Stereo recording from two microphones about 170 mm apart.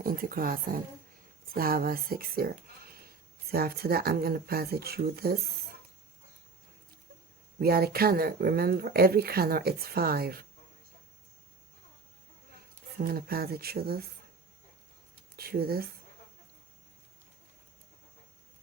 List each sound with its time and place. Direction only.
0.0 s speech: 55° right (ahead or behind)
7.6 s speech: 65° right (ahead or behind)
13.0 s speech: 60° right (ahead or behind)
15.4 s speech: 65° right (ahead or behind)